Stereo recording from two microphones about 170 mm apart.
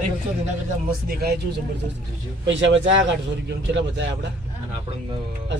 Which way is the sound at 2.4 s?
90° right.